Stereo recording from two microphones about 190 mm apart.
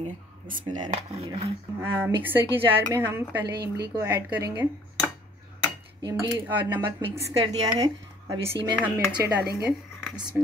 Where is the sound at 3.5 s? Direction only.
60° right (ahead or behind).